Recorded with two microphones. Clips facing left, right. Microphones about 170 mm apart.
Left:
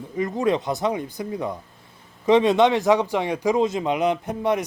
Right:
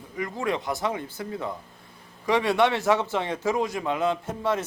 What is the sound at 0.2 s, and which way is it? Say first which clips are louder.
Speech: left 6 dB; 20° left (ahead or behind).